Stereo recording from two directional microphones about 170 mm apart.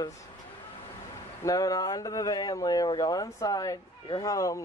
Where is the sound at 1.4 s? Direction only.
20° left (ahead or behind).